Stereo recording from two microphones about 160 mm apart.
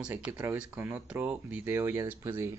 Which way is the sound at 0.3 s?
10° right (ahead or behind).